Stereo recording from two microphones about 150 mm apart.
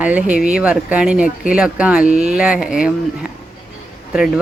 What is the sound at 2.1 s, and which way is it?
Speech, 50° right (ahead or behind).